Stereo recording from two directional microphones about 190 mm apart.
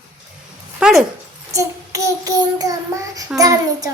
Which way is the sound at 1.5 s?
15° right (ahead or behind).